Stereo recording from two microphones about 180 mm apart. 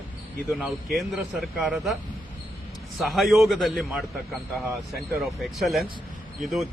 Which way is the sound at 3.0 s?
Centre (ahead or behind).